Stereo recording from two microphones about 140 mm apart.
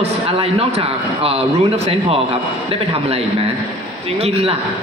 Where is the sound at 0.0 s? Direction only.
45° right (ahead or behind).